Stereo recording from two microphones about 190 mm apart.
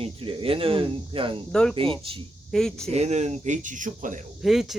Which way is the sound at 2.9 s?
35° right (ahead or behind).